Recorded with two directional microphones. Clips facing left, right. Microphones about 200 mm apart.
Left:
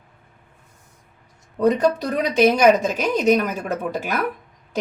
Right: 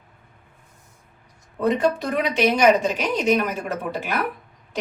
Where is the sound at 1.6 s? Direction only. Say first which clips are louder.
Left 3 dB; 40° left (ahead or behind).